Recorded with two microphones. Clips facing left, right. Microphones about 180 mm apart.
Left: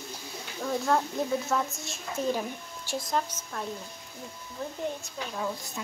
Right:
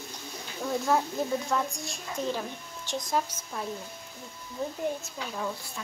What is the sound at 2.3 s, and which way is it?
Speech, 10° left (ahead or behind).